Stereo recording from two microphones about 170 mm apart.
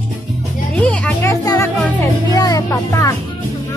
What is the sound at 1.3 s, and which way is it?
Music, 20° left (ahead or behind).